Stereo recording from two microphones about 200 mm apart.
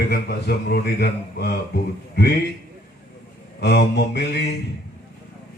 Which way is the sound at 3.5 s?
55° left (ahead or behind).